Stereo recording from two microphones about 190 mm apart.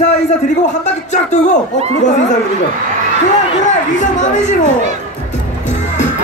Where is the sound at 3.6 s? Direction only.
40° left (ahead or behind).